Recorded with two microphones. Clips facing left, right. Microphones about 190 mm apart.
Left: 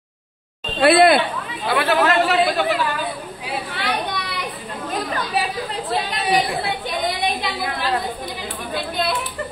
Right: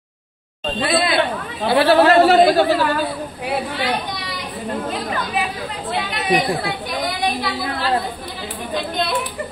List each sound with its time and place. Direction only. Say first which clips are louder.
0.7 s speech: left 6 dB; 60° left (ahead or behind)
1.7 s a man's voice: right 5 dB; 30° right (ahead or behind)
5.9 s speech: right 2 dB; 35° left (ahead or behind)
7.1 s a sound: right 2 dB; 20° left (ahead or behind)